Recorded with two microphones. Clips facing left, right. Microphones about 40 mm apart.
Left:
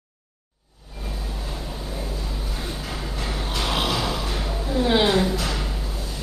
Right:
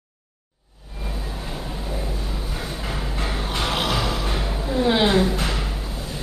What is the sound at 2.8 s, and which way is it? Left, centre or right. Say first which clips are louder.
Vehicle: right 2 dB; right.